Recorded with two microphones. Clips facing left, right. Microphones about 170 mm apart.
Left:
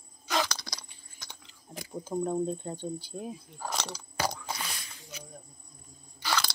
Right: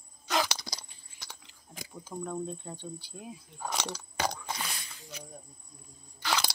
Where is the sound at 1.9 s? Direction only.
30° left (ahead or behind).